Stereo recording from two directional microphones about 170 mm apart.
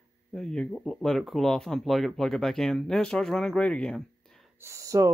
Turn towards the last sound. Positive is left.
turn(degrees=-20)  # may be behind; listen again after turning